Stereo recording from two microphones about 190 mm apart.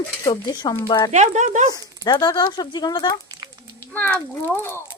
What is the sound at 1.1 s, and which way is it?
Speech, 40° right (ahead or behind).